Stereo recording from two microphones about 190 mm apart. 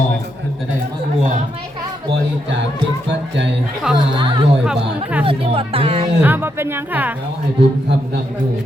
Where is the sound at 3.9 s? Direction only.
25° right (ahead or behind).